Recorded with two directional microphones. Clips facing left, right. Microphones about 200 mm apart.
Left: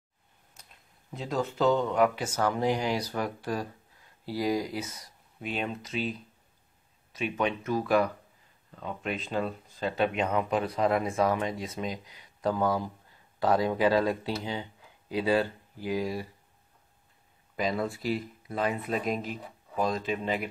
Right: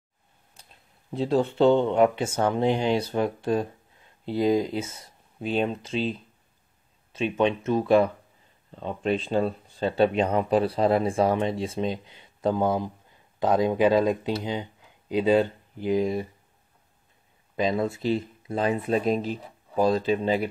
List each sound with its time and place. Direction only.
0.6 s a sound: 30° right (ahead or behind)
1.1 s speech: 30° right (ahead or behind)
17.6 s speech: 25° right (ahead or behind)